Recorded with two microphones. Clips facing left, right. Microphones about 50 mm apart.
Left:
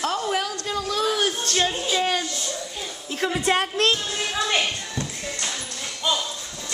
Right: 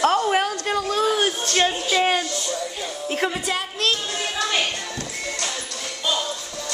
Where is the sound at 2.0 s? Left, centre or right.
Right.